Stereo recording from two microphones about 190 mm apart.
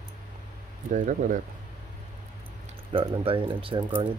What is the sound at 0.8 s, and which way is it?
Speech, 45° right (ahead or behind).